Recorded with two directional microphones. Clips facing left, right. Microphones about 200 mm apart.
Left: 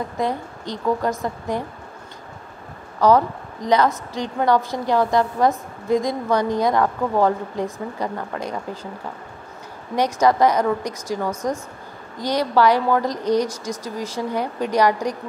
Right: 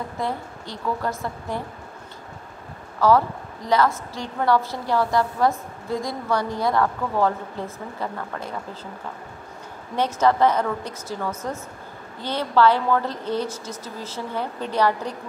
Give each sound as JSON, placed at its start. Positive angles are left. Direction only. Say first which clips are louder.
{"t": 0.2, "sound": "a woman's voice", "louder": "left 4 dB", "side_deg": 20}
{"t": 3.0, "sound": "a woman's voice", "louder": "left 2 dB", "side_deg": 20}
{"t": 9.9, "sound": "a woman's voice", "louder": "left 2 dB", "side_deg": 15}